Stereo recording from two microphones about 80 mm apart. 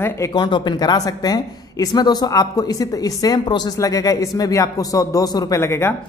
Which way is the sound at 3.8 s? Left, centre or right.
Left.